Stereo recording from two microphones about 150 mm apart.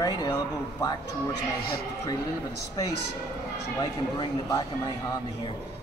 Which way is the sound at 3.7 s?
25° left (ahead or behind).